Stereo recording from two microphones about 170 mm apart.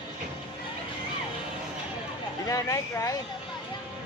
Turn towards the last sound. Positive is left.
turn(degrees=20)  # may be behind; listen again after turning